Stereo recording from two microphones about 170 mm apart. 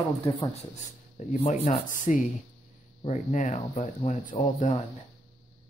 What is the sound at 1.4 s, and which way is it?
Speech, 45° left (ahead or behind).